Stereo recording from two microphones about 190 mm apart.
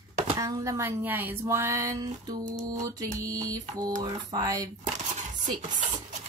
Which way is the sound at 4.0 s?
20° right (ahead or behind).